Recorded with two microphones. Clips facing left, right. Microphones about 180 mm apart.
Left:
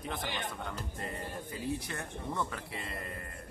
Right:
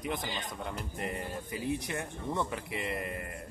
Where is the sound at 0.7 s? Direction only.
15° right (ahead or behind).